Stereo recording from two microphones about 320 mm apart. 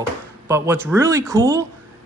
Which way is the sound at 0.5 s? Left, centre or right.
Centre.